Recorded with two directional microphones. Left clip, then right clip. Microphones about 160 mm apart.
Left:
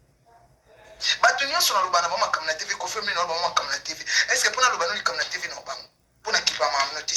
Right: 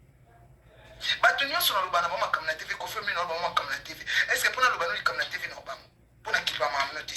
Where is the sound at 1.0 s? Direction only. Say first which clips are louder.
Left 3 dB; 20° left (ahead or behind).